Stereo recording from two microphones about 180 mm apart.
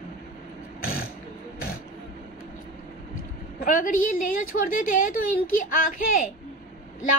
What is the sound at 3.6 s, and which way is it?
A woman's voice, 50° left (ahead or behind).